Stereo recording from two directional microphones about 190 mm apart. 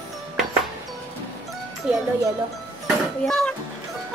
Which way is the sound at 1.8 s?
5° right (ahead or behind).